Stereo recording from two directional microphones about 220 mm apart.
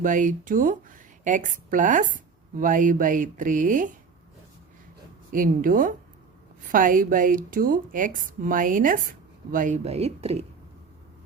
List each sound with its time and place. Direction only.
0.0 s speech: 35° right (ahead or behind)
5.3 s speech: 40° right (ahead or behind)